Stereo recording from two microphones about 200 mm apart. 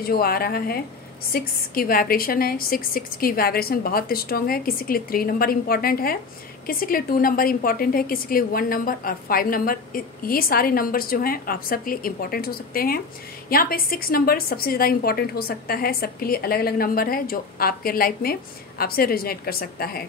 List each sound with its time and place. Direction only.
0.0 s a woman's voice: 50° left (ahead or behind)